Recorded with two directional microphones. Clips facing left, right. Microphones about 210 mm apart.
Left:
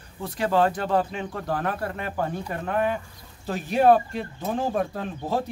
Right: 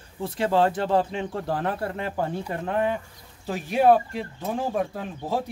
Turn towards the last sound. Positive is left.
turn(degrees=-10)  # may be behind; listen again after turning